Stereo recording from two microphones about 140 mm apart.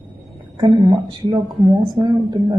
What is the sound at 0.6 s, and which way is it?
A woman's voice, 35° right (ahead or behind).